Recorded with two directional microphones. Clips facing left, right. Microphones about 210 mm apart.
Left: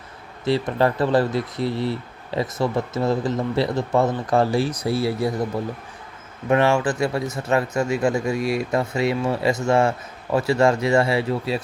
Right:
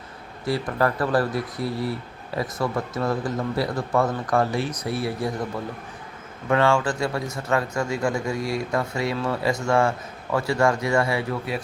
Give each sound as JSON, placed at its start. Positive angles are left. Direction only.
{"t": 0.4, "sound": "speech", "side_deg": 25}
{"t": 6.5, "sound": "speech", "side_deg": 20}